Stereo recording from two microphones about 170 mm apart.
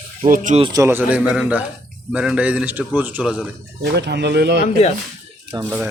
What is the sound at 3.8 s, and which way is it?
Speech, 85° right.